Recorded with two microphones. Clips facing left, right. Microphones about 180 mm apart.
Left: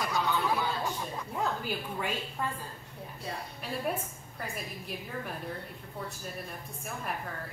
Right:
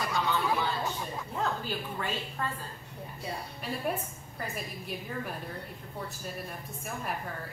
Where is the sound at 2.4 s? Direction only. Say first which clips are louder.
Left 1 dB; 10° left (ahead or behind).